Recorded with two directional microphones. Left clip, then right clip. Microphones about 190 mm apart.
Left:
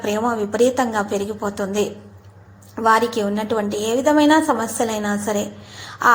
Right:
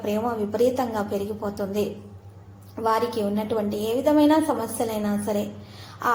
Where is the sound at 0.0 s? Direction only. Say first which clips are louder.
Left 5 dB; 20° left (ahead or behind).